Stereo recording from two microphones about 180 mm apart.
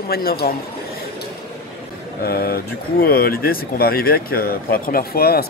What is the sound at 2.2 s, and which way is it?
A man's voice, 55° left (ahead or behind).